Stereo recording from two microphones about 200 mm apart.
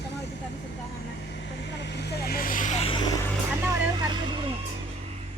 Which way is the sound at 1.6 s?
60° left (ahead or behind).